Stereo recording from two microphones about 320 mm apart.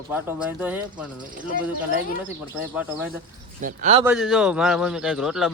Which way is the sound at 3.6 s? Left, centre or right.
Right.